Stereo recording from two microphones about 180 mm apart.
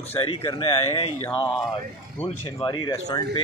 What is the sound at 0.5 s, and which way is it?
Speech, 30° left (ahead or behind).